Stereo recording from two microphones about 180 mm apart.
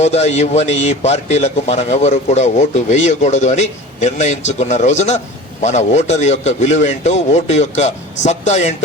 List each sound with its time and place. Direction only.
0.0 s a man's voice: 40° left (ahead or behind)